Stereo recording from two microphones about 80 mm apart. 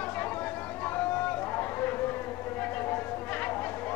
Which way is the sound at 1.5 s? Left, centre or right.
Left.